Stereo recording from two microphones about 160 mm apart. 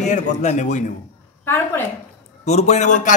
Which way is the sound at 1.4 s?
15° left (ahead or behind).